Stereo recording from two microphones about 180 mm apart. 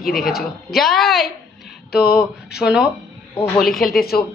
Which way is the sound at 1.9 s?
60° left (ahead or behind).